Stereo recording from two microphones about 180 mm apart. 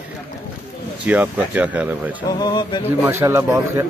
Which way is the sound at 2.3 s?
25° left (ahead or behind).